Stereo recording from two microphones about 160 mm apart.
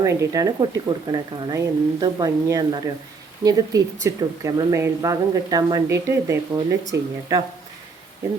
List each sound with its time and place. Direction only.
0.0 s speech: 20° right (ahead or behind)